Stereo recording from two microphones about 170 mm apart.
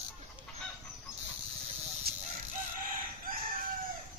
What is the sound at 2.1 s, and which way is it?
Chicken, 65° right (ahead or behind).